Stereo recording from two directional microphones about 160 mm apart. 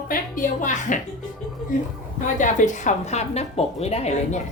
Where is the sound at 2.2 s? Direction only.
55° left (ahead or behind).